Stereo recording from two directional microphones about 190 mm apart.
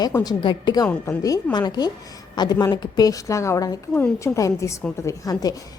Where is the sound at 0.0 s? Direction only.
20° left (ahead or behind).